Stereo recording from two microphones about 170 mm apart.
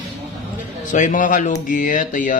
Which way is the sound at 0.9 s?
50° left (ahead or behind).